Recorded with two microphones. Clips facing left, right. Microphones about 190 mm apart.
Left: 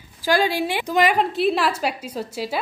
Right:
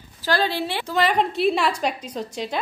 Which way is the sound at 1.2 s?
Centre (ahead or behind).